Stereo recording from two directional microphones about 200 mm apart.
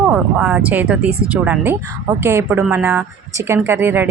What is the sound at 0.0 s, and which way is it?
Speech, 5° right (ahead or behind).